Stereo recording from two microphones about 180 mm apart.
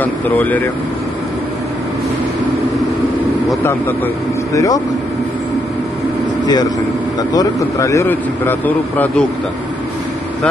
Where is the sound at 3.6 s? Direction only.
10° left (ahead or behind).